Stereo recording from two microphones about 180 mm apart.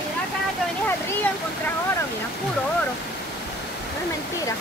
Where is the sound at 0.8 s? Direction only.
10° left (ahead or behind).